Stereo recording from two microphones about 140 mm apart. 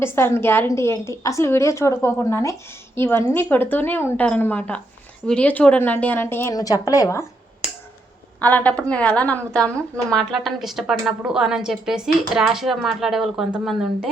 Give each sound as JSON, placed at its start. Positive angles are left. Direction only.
{"t": 0.0, "sound": "a woman's voice", "side_deg": 20}
{"t": 8.4, "sound": "a woman's voice", "side_deg": 10}